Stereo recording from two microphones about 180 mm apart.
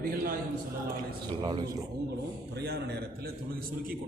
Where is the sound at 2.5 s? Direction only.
60° right (ahead or behind).